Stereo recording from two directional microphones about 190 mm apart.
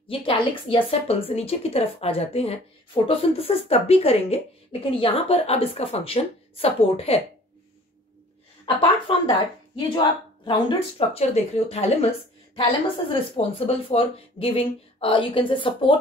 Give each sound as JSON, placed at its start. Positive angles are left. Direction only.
{"t": 0.1, "sound": "a woman's voice", "side_deg": 25}
{"t": 8.6, "sound": "a woman's voice", "side_deg": 30}